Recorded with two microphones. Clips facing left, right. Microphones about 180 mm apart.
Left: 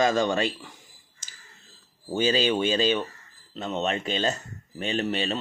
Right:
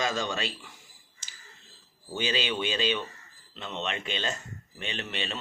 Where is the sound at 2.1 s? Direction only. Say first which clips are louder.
Left 7 dB; 40° left (ahead or behind).